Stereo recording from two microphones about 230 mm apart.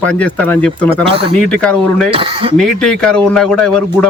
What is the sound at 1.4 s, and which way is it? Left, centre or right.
Speech, centre.